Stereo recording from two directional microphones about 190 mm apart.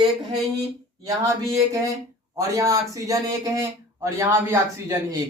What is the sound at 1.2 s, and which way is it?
Speech, 15° right (ahead or behind).